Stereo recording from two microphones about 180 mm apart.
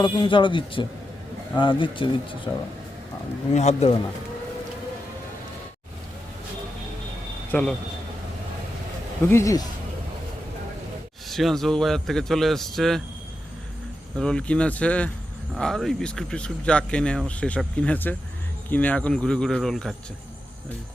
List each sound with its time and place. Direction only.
0.0 s speech: 25° left (ahead or behind)
3.5 s speech: 40° left (ahead or behind)
7.5 s speech: 5° left (ahead or behind)
9.3 s speech: 15° left (ahead or behind)
11.3 s speech: centre (ahead or behind)
14.2 s speech: 5° left (ahead or behind)